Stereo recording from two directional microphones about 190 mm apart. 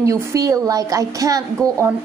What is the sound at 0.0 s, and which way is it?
A woman's voice, 15° right (ahead or behind).